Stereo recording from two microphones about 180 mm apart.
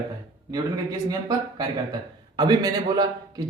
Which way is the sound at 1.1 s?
20° right (ahead or behind).